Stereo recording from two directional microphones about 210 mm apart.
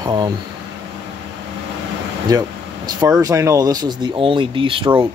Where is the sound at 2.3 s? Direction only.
20° right (ahead or behind).